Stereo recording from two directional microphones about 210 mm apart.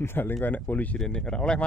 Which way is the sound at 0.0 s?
10° left (ahead or behind).